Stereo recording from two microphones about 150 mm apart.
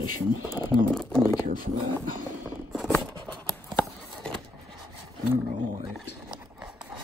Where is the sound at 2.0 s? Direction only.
15° right (ahead or behind).